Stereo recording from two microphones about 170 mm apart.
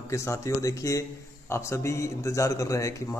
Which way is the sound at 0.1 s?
15° left (ahead or behind).